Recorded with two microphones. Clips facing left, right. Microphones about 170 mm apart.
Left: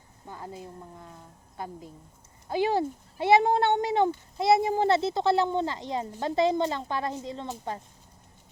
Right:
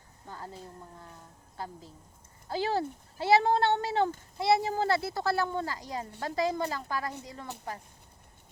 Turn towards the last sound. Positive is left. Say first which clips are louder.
# left 5 dB
turn(degrees=25)  # may be behind; listen again after turning